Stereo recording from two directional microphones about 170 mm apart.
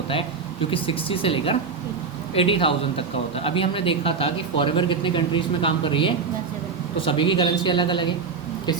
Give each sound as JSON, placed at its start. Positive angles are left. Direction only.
{"t": 0.7, "sound": "a man's voice", "side_deg": 30}